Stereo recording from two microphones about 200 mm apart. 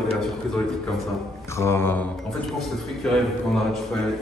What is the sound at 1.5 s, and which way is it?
A man's voice, 10° left (ahead or behind).